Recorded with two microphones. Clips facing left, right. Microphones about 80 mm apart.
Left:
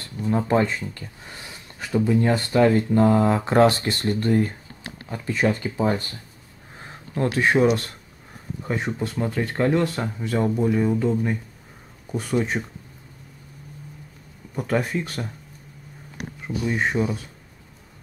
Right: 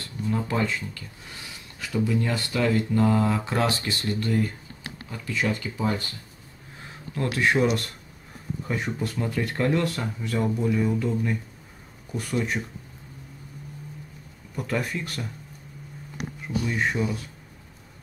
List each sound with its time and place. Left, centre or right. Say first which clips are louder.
0.3 s speech: left 6 dB; left
2.0 s speech: left 8 dB; left
7.2 s speech: left 3 dB; left
14.5 s speech: left 5 dB; centre
16.4 s speech: left 2 dB; left